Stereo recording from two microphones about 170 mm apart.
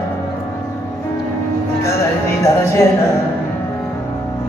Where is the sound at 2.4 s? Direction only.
15° left (ahead or behind).